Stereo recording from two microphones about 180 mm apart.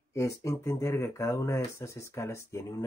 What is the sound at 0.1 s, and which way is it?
Speech, 15° left (ahead or behind).